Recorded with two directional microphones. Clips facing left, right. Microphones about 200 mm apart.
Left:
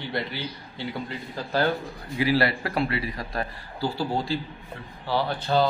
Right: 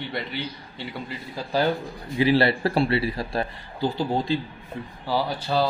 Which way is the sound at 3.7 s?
20° right (ahead or behind).